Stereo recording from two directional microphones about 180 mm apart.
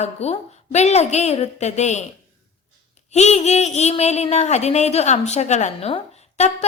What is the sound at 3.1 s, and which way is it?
Speech, 40° left (ahead or behind).